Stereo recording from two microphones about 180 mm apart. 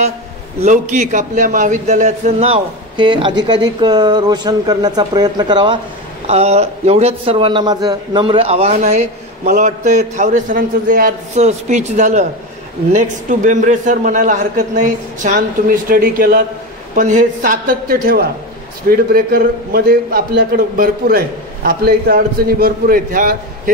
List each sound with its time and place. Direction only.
0.6 s a man's voice: 40° right (ahead or behind); by 5.8 s 25° right (ahead or behind)
6.2 s a man's voice: 35° right (ahead or behind)